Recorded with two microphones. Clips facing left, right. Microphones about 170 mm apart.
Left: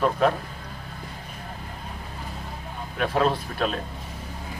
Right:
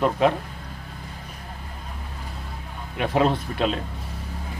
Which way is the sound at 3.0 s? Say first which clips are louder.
Right 2 dB; 20° right (ahead or behind).